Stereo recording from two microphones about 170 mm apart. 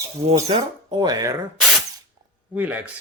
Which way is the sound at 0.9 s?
25° right (ahead or behind).